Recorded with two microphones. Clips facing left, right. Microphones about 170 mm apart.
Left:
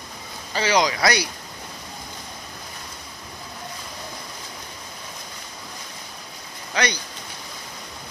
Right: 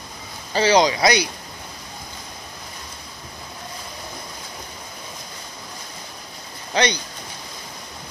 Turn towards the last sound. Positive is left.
turn(degrees=-25)  # may be behind; listen again after turning